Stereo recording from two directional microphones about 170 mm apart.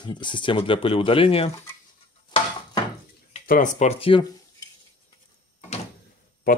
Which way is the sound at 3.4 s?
50° left (ahead or behind).